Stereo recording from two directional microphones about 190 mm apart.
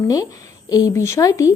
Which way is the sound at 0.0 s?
20° left (ahead or behind).